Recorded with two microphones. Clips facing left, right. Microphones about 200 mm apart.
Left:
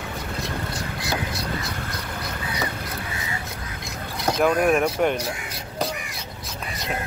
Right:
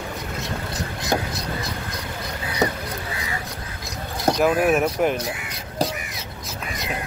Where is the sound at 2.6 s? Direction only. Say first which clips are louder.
Right 9 dB; 45° right (ahead or behind).